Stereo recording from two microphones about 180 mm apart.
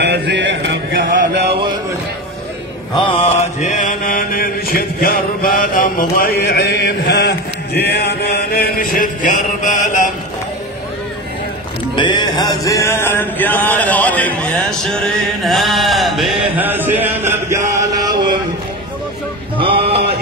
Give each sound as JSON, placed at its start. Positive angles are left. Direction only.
{"t": 0.0, "sound": "mantra", "side_deg": -70}
{"t": 3.0, "sound": "mantra", "side_deg": 30}
{"t": 7.9, "sound": "chant", "side_deg": 60}
{"t": 11.9, "sound": "music", "side_deg": 25}
{"t": 19.6, "sound": "mantra", "side_deg": -30}